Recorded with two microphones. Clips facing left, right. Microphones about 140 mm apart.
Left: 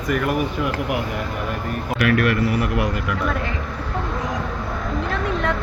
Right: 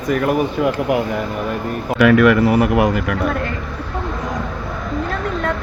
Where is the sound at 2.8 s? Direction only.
60° right (ahead or behind).